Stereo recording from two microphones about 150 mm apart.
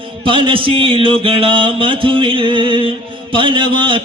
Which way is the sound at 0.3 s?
35° right (ahead or behind).